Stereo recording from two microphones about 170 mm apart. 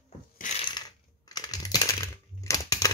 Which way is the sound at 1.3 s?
20° left (ahead or behind).